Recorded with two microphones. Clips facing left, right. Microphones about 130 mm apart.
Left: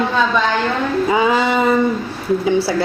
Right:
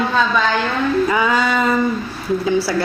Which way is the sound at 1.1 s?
25° left (ahead or behind).